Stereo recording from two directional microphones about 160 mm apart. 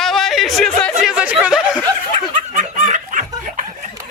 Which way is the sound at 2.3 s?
50° right (ahead or behind).